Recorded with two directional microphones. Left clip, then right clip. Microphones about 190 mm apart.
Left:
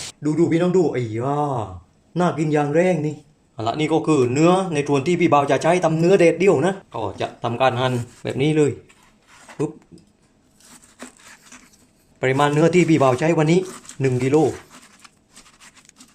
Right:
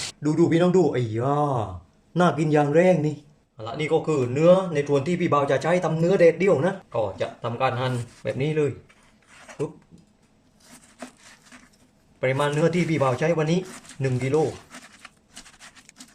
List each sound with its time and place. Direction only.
0.2 s speech: 5° right (ahead or behind)
3.6 s speech: 45° left (ahead or behind)
12.2 s speech: 40° left (ahead or behind)